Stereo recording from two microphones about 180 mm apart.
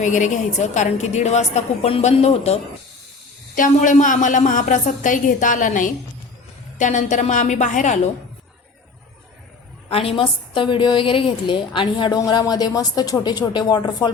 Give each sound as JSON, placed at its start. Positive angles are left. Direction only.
{"t": 0.0, "sound": "a woman's voice", "side_deg": 45}
{"t": 9.9, "sound": "a woman's voice", "side_deg": 30}